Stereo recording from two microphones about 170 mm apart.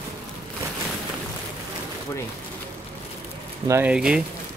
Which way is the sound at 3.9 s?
5° right (ahead or behind).